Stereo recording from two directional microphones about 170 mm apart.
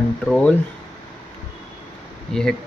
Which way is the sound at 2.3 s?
Centre (ahead or behind).